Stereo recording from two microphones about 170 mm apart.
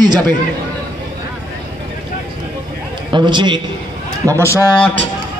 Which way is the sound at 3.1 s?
25° right (ahead or behind).